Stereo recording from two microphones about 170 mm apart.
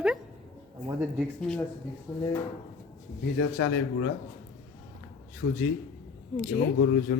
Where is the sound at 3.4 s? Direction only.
90° left.